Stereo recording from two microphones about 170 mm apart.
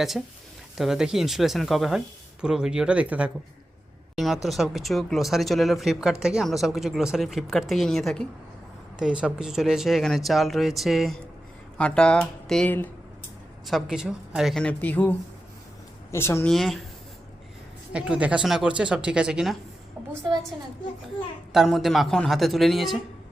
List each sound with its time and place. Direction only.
0.1 s speech: centre (ahead or behind)
13.7 s speech: centre (ahead or behind)
16.1 s speech: 15° left (ahead or behind)
16.5 s speech: centre (ahead or behind)
17.9 s speech: 5° right (ahead or behind)
21.5 s speech: centre (ahead or behind)